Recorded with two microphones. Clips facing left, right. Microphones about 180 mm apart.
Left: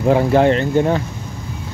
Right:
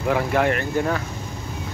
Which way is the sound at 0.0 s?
30° left (ahead or behind).